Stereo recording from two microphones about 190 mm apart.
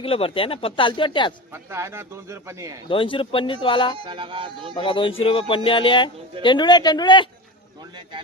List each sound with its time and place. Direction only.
0.0 s speech: 30° left (ahead or behind)
1.5 s speech: 15° right (ahead or behind)
2.9 s speech: 25° left (ahead or behind)
3.9 s music: 25° right (ahead or behind)
4.7 s speech: 25° left (ahead or behind)